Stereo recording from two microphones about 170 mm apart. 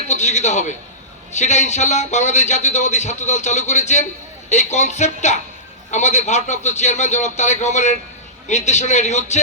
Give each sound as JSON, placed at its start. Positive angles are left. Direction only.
{"t": 0.1, "sound": "a man's voice", "side_deg": 45}